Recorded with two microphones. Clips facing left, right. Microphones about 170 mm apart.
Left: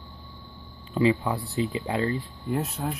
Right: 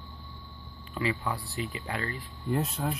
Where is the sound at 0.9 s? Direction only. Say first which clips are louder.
Left 8 dB; 20° left (ahead or behind).